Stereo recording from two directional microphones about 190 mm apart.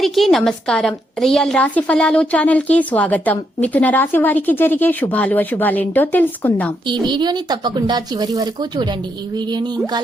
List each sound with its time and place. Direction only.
0.0 s a woman's voice: centre (ahead or behind)
6.8 s speech: 25° right (ahead or behind)